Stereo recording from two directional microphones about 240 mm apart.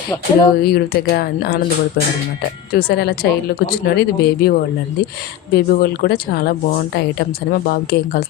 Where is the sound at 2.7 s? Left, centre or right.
Left.